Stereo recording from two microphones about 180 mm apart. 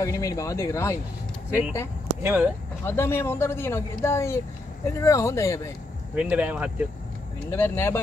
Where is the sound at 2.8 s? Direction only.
15° left (ahead or behind).